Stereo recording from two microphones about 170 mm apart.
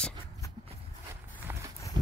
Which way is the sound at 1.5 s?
15° right (ahead or behind).